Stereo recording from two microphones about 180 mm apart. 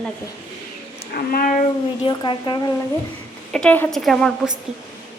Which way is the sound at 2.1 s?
25° left (ahead or behind).